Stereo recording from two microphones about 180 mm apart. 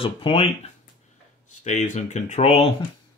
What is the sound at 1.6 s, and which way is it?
Speech, 40° left (ahead or behind).